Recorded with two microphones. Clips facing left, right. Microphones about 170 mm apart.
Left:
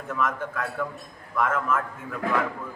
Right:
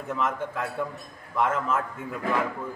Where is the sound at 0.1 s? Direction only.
25° right (ahead or behind).